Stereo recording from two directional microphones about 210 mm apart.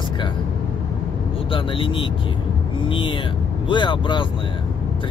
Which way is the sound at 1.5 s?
25° left (ahead or behind).